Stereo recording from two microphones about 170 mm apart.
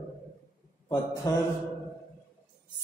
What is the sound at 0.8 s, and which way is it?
Speech, 20° left (ahead or behind).